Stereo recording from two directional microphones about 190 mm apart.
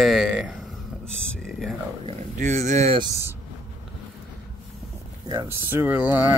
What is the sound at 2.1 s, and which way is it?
Speech, 40° right (ahead or behind).